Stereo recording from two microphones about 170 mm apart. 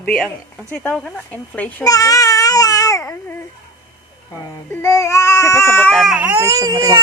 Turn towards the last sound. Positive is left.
turn(degrees=-20)  # may be behind; listen again after turning